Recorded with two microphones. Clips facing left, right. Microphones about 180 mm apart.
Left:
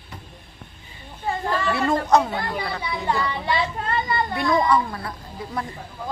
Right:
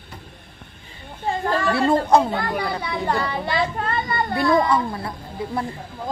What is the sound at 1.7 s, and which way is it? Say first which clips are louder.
Speech: right 2 dB; 30° right (ahead or behind).